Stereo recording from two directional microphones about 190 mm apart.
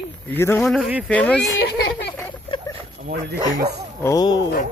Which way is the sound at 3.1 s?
50° right (ahead or behind).